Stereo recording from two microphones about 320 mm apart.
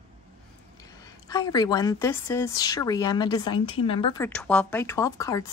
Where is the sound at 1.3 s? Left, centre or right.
Centre.